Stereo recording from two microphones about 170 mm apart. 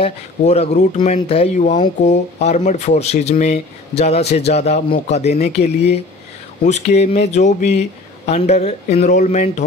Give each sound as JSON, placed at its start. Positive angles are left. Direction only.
{"t": 0.0, "sound": "speech", "side_deg": 40}